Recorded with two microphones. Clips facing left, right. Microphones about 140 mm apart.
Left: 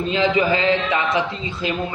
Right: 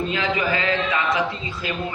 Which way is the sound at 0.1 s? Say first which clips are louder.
Left 5 dB; 25° left (ahead or behind).